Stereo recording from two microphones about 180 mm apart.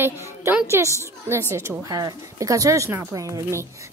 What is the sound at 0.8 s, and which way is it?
A woman's voice, 15° right (ahead or behind).